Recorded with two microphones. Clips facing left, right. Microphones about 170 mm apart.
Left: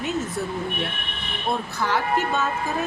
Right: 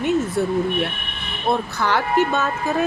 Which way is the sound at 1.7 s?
70° right (ahead or behind).